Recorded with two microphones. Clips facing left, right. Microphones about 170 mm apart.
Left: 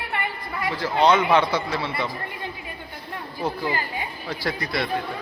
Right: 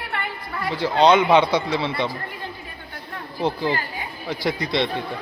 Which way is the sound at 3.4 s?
25° right (ahead or behind).